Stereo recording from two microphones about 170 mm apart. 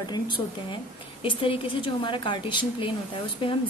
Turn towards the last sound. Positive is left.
turn(degrees=30)  # may be behind; listen again after turning